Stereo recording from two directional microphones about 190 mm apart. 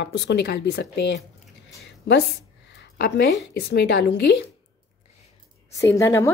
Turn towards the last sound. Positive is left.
turn(degrees=15)  # may be behind; listen again after turning